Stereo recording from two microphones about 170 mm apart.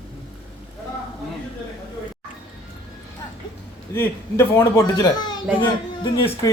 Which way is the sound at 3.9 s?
10° left (ahead or behind).